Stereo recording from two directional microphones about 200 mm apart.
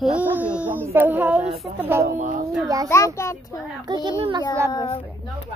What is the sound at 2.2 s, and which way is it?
Speech, 40° right (ahead or behind).